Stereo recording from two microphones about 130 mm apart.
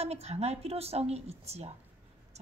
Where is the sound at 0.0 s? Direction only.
55° right (ahead or behind).